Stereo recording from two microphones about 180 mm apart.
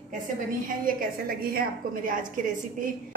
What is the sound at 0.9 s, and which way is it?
Speech, 55° right (ahead or behind).